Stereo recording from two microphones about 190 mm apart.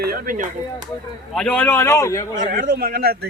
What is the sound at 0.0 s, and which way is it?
Speech, 50° right (ahead or behind).